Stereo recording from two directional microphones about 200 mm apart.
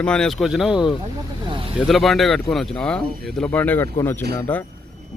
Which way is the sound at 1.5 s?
25° right (ahead or behind).